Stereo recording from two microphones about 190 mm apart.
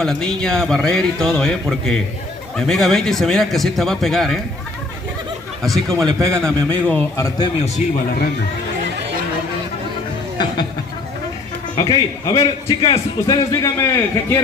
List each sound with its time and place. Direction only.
0.0 s a man's voice: 5° left (ahead or behind)
5.7 s a man's voice: centre (ahead or behind)
6.1 s a man's voice: 15° right (ahead or behind)
6.4 s a man's voice: 5° left (ahead or behind)
11.7 s a man's voice: 25° left (ahead or behind)
13.5 s a man's voice: 15° left (ahead or behind)